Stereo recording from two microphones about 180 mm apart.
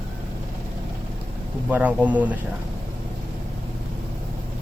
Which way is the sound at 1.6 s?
10° right (ahead or behind).